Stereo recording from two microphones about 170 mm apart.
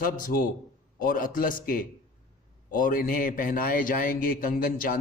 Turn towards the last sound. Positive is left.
turn(degrees=55)  # may be behind; listen again after turning